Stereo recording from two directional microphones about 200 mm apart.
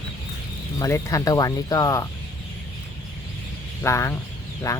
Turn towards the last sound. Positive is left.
turn(degrees=15)  # may be behind; listen again after turning